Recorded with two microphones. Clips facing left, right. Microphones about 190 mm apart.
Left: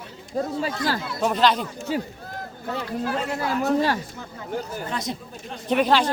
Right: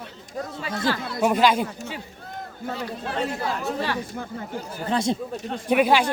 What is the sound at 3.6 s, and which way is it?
Speech, 40° left (ahead or behind).